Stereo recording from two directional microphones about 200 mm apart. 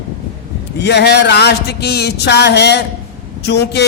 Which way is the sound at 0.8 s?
60° left (ahead or behind).